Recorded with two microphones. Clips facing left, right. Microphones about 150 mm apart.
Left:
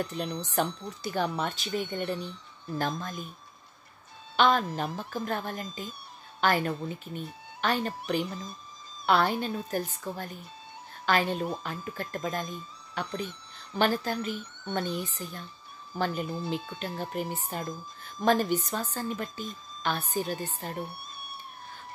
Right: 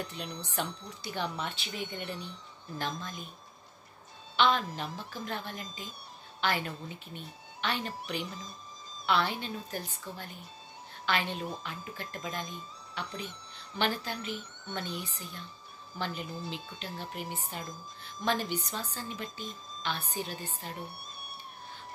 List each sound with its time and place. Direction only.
0.0 s speech: 45° left (ahead or behind)
4.4 s speech: 45° left (ahead or behind)